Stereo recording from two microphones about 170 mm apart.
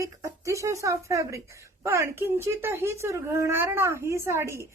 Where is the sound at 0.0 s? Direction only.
20° right (ahead or behind).